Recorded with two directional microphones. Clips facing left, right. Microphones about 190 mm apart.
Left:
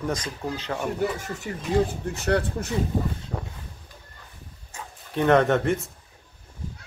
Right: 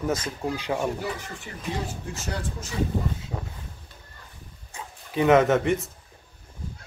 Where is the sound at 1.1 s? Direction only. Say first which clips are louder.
Left 6 dB; 40° left (ahead or behind).